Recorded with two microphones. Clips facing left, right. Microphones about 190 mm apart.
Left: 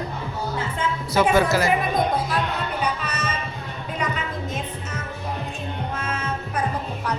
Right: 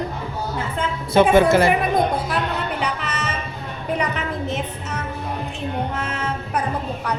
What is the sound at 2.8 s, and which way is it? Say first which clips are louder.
Music: right 1 dB; 70° right (ahead or behind).